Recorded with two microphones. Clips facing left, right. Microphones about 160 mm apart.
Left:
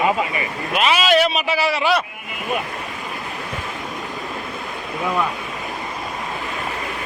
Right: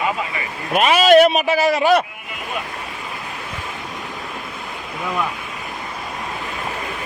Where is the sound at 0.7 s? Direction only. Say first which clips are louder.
Right 5 dB; 45° right (ahead or behind).